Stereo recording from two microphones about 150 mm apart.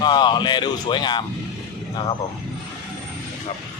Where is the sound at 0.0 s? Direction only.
30° left (ahead or behind).